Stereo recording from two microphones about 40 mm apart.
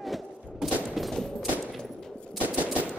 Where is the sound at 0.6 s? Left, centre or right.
Centre.